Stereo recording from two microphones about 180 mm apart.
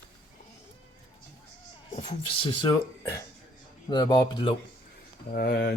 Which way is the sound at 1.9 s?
35° left (ahead or behind).